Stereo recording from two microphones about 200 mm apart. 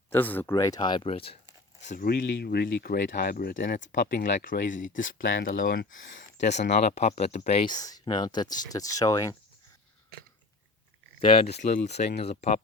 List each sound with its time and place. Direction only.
0.1 s speech: 10° left (ahead or behind); by 2.0 s 35° left (ahead or behind)
2.0 s speech: 50° left (ahead or behind); by 9.3 s 15° left (ahead or behind)
11.2 s speech: 25° left (ahead or behind)